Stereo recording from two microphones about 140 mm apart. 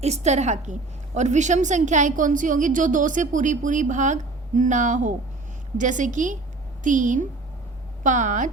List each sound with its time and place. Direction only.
0.0 s a woman's voice: 50° right (ahead or behind)